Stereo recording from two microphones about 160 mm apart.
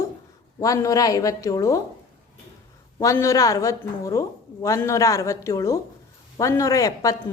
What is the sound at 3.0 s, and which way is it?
A woman's voice, 20° left (ahead or behind).